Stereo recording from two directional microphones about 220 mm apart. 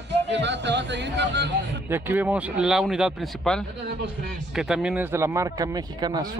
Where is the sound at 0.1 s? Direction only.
50° right (ahead or behind).